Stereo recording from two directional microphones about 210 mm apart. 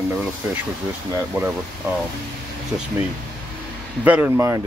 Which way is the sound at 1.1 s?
10° right (ahead or behind).